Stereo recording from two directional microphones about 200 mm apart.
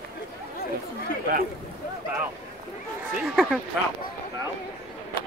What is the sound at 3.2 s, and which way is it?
Speech, centre (ahead or behind).